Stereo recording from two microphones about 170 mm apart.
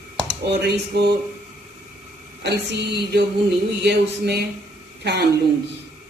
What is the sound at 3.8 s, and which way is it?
A woman's voice, 75° right (ahead or behind).